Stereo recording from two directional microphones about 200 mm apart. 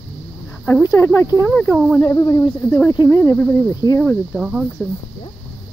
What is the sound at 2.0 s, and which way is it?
Speech, 15° left (ahead or behind).